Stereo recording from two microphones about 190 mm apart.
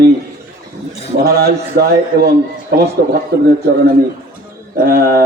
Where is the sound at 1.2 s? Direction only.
55° right (ahead or behind).